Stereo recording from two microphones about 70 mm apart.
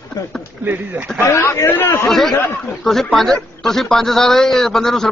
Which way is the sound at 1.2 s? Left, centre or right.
Left.